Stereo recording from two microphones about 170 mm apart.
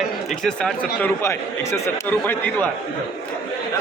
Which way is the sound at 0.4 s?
5° left (ahead or behind).